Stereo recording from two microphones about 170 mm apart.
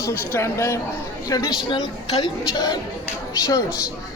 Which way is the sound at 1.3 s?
20° left (ahead or behind).